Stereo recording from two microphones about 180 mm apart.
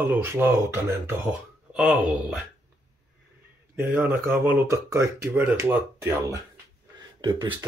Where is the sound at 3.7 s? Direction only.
15° right (ahead or behind).